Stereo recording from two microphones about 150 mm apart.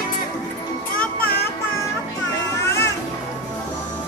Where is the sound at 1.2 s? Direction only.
80° left.